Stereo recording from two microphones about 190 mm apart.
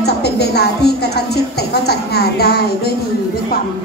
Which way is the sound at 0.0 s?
60° left (ahead or behind).